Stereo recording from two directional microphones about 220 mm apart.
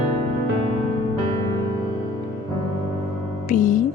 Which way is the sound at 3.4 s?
35° left (ahead or behind).